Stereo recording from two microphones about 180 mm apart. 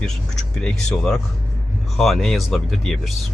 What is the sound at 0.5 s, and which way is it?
Speech, 5° left (ahead or behind).